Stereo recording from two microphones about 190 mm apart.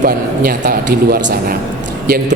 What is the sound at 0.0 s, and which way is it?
A man's voice, 45° right (ahead or behind).